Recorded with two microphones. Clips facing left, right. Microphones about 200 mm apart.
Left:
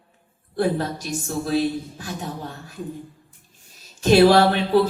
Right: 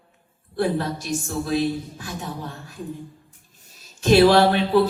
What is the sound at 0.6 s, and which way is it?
A woman's voice, 45° left (ahead or behind).